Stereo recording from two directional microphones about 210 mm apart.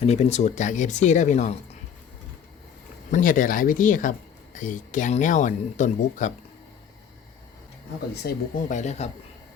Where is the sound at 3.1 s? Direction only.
40° left (ahead or behind).